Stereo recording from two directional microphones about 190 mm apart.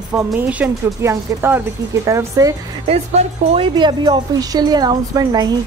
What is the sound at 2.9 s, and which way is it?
Speech, 30° right (ahead or behind).